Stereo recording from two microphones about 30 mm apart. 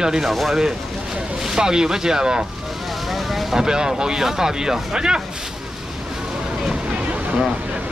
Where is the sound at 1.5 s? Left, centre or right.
Right.